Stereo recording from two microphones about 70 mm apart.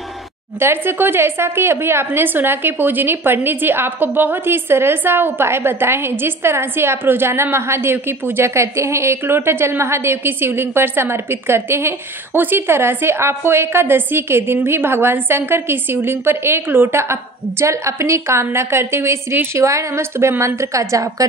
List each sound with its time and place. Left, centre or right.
0.6 s speech: right